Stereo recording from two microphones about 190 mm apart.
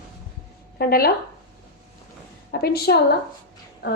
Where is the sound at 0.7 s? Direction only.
55° left (ahead or behind).